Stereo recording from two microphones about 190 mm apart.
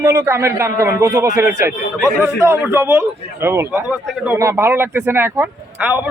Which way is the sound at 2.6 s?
10° right (ahead or behind).